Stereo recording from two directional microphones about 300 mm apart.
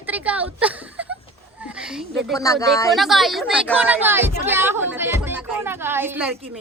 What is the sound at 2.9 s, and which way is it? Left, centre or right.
A woman's voice, centre.